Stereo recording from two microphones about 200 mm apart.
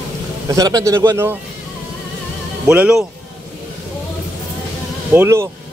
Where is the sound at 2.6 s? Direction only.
5° right (ahead or behind).